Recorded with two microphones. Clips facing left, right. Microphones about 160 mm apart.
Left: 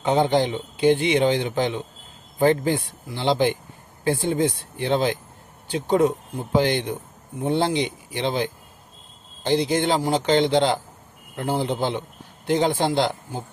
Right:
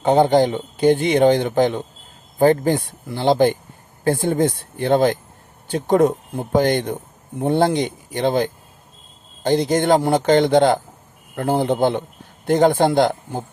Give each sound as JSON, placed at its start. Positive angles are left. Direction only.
{"t": 0.0, "sound": "a man's voice", "side_deg": -45}